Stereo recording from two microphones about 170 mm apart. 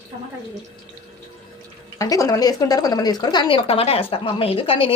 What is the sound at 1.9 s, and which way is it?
A woman's voice, 20° left (ahead or behind).